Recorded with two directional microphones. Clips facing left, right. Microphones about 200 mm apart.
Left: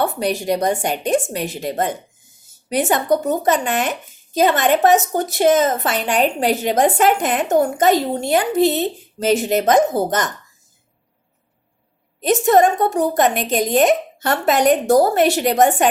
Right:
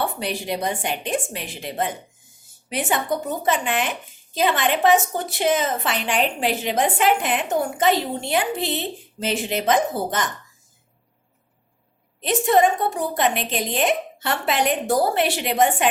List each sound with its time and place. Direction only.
0.0 s a woman's voice: 45° left (ahead or behind)
12.2 s a woman's voice: 45° left (ahead or behind)